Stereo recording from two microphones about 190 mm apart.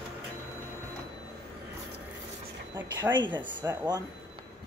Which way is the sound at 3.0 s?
20° right (ahead or behind).